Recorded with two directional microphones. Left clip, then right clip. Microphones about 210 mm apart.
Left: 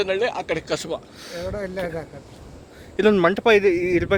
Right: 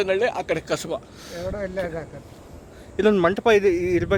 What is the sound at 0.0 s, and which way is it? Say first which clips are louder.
Speech: right 1 dB; 40° right (ahead or behind).